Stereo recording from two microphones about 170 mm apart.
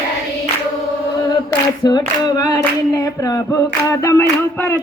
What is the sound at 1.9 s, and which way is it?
Singing, 25° left (ahead or behind).